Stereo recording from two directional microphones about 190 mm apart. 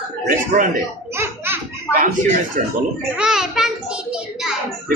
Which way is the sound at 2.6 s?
40° right (ahead or behind).